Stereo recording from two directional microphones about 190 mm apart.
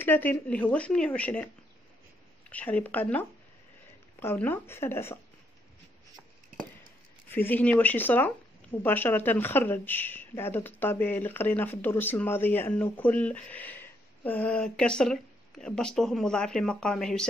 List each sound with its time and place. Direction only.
0.0 s speech: 10° left (ahead or behind)
2.5 s speech: 10° left (ahead or behind)
7.2 s speech: 10° left (ahead or behind)